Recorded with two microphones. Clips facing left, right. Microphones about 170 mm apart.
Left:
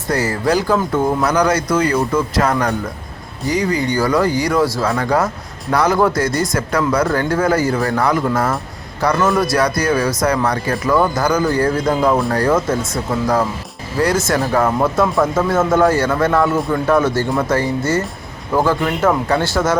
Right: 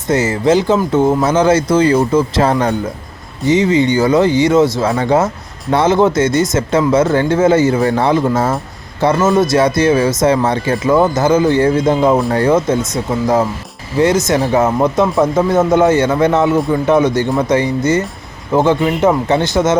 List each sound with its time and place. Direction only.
0.1 s speech: 20° right (ahead or behind)